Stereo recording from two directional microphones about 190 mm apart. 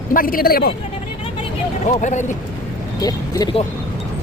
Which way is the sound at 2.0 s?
40° left (ahead or behind).